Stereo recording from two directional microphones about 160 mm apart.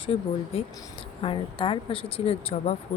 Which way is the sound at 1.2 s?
35° left (ahead or behind).